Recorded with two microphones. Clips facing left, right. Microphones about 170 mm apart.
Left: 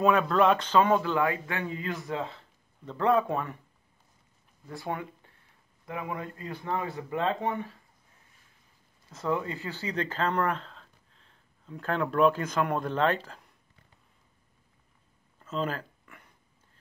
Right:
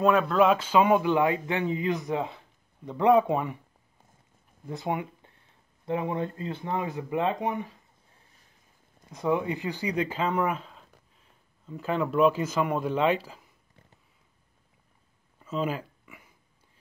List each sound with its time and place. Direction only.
0.0 s speech: centre (ahead or behind)
4.6 s speech: 20° right (ahead or behind)
9.1 s speech: 15° right (ahead or behind)
15.3 s a sound: 10° right (ahead or behind)